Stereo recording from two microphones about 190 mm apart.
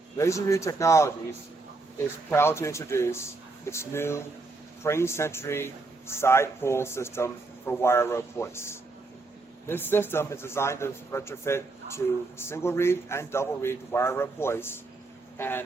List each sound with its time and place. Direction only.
0.2 s speech: 15° left (ahead or behind)